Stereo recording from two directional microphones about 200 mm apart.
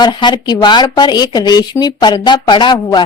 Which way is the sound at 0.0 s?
20° left (ahead or behind).